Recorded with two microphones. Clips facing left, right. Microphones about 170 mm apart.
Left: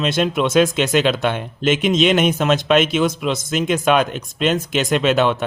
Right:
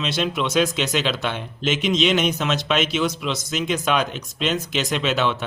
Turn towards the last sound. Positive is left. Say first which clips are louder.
# left 6 dB
turn(degrees=50)  # may be behind; listen again after turning